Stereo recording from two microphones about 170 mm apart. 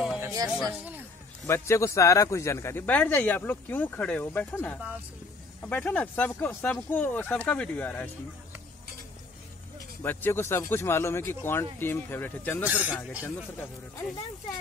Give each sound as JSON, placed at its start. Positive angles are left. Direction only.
{"t": 0.2, "sound": "a sound", "side_deg": -20}
{"t": 1.4, "sound": "speech", "side_deg": 15}
{"t": 10.0, "sound": "speech", "side_deg": 10}
{"t": 12.6, "sound": "speech", "side_deg": -10}
{"t": 13.2, "sound": "speech", "side_deg": 20}